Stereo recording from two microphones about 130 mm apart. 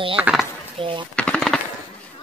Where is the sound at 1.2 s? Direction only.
5° left (ahead or behind).